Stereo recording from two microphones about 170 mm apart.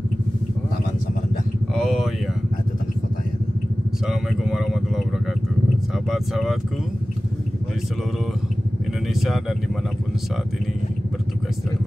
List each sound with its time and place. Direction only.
1.8 s a sound: centre (ahead or behind)
4.0 s vehicle: centre (ahead or behind)
5.9 s speech: centre (ahead or behind)
9.0 s speech: centre (ahead or behind)